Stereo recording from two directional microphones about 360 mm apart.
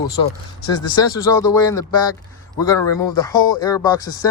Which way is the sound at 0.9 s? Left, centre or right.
Centre.